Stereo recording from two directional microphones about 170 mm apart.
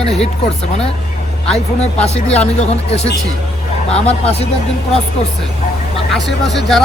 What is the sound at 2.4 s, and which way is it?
Speech, 40° left (ahead or behind).